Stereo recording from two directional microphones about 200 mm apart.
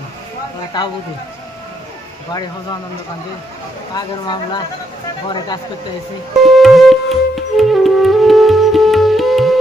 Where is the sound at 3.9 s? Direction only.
20° left (ahead or behind).